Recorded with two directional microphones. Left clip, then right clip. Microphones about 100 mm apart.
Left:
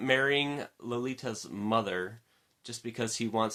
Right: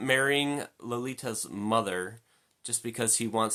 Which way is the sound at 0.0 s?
35° right (ahead or behind).